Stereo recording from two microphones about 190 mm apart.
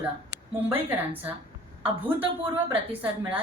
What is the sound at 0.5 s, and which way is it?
Speech, 10° right (ahead or behind).